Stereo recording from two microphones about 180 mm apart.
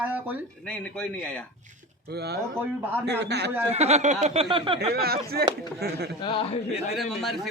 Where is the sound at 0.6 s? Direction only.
5° left (ahead or behind).